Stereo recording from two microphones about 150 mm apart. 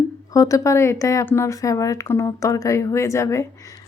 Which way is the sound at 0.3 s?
20° left (ahead or behind).